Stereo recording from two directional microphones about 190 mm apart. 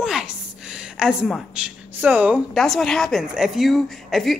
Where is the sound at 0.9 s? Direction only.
Centre (ahead or behind).